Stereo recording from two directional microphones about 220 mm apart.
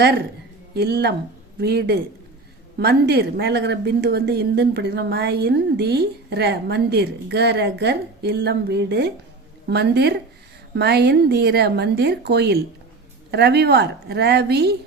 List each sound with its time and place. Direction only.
0.7 s a woman's voice: 45° right (ahead or behind)